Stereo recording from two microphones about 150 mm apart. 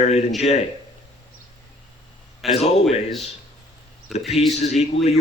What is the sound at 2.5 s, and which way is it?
Speech, 45° left (ahead or behind).